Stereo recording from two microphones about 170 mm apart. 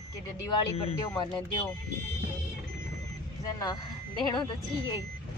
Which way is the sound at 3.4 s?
20° left (ahead or behind).